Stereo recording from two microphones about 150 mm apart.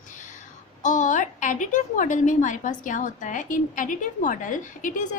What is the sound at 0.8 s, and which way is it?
A woman's voice, 55° left (ahead or behind).